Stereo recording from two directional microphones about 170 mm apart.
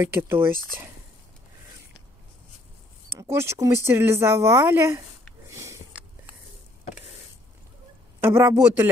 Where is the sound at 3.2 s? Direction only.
15° right (ahead or behind).